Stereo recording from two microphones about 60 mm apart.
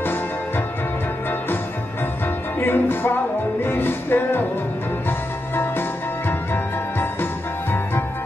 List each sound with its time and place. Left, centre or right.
2.6 s music: left
5.6 s music: left